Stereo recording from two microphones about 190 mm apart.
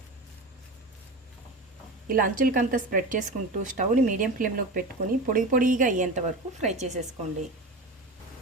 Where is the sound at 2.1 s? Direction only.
45° right (ahead or behind).